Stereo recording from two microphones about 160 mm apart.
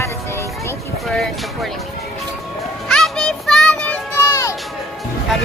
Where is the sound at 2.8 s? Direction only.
Centre (ahead or behind).